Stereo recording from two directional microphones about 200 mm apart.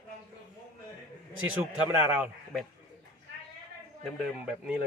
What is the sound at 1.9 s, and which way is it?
Speech, 10° right (ahead or behind).